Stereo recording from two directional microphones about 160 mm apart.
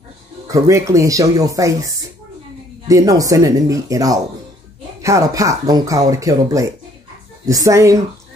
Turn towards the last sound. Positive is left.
turn(degrees=-20)  # may be behind; listen again after turning